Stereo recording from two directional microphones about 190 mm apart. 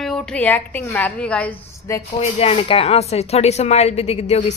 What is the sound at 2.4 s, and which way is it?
Speech, 30° left (ahead or behind).